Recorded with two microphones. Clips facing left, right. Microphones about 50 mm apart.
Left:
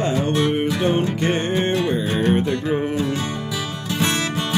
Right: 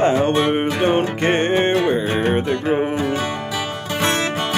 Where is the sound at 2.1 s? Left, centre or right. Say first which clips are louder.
Right 1 dB; right.